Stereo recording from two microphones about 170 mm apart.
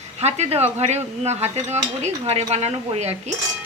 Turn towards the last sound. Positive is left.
turn(degrees=-40)  # may be behind; listen again after turning